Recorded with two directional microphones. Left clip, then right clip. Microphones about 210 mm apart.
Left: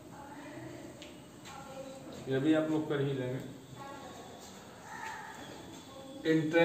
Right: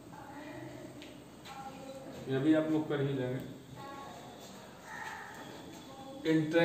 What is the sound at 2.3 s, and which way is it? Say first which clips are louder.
Speech: even; centre (ahead or behind).